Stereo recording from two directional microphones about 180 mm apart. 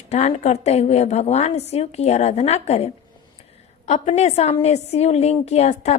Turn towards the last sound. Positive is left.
turn(degrees=40)  # may be behind; listen again after turning